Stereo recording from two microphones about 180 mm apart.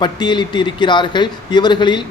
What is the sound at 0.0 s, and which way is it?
Speech, 25° left (ahead or behind).